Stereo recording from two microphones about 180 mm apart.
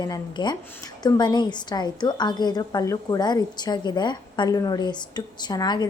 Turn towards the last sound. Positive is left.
turn(degrees=25)  # may be behind; listen again after turning